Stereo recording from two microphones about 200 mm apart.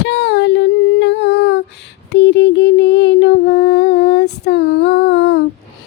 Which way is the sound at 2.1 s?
60° left (ahead or behind).